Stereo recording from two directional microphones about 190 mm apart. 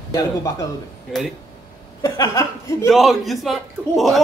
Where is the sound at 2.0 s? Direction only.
15° left (ahead or behind).